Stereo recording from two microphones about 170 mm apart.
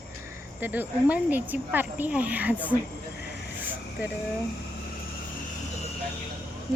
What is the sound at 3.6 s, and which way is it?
Vehicle, 10° right (ahead or behind).